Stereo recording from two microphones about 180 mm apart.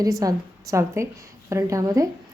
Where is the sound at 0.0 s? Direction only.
20° right (ahead or behind).